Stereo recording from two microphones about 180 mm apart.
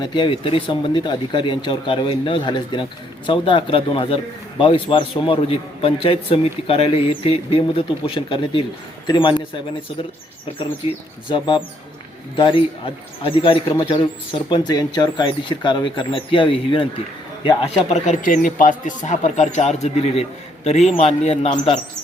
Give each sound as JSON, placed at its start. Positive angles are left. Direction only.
{"t": 0.0, "sound": "a man's voice", "side_deg": 25}
{"t": 11.3, "sound": "a man's voice", "side_deg": 25}